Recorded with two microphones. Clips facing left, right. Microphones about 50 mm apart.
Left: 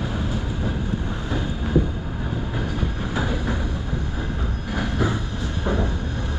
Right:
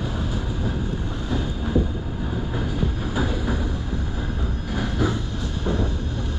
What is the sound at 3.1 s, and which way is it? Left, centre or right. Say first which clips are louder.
Vehicle: even; centre.